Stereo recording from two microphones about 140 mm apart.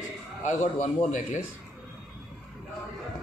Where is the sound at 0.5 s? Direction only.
70° left (ahead or behind).